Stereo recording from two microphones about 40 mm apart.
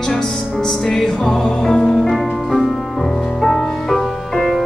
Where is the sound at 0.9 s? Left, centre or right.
Centre.